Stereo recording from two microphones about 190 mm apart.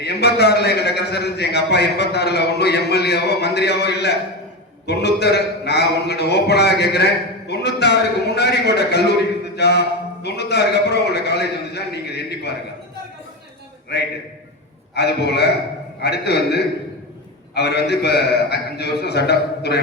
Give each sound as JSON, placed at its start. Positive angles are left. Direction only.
{"t": 0.0, "sound": "a man's voice", "side_deg": 60}
{"t": 13.9, "sound": "a man's voice", "side_deg": 60}